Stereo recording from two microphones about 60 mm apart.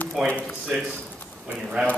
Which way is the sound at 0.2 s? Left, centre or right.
Centre.